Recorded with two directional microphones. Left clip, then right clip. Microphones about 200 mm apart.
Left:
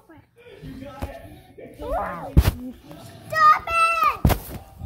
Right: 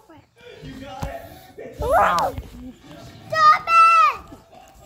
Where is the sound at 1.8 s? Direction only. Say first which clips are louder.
Right 10 dB; 30° right (ahead or behind).